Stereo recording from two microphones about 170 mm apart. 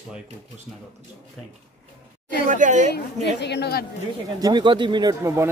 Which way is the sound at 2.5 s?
45° right (ahead or behind).